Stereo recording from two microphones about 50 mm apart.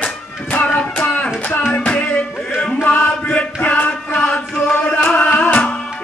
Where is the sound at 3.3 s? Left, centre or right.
Left.